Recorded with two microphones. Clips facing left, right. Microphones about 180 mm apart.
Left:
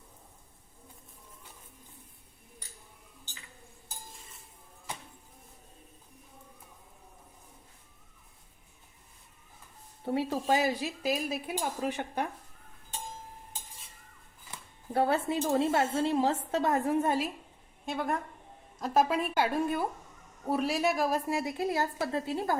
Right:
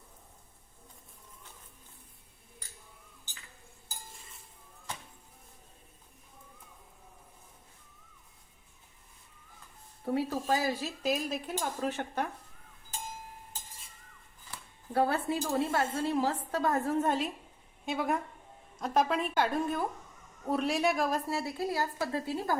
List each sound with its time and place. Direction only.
10.0 s speech: 25° left (ahead or behind)
14.5 s a woman's voice: 25° left (ahead or behind); by 21.2 s centre (ahead or behind)
21.2 s speech: 15° left (ahead or behind)